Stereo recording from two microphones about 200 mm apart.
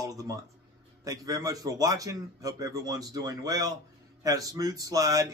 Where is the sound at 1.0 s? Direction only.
15° right (ahead or behind).